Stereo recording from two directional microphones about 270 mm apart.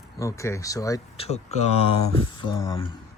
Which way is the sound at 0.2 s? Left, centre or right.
Centre.